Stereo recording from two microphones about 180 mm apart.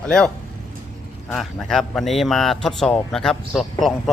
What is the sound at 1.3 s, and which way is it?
A man's voice, centre (ahead or behind).